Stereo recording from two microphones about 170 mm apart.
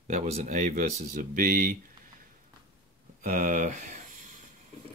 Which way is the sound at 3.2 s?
50° right (ahead or behind).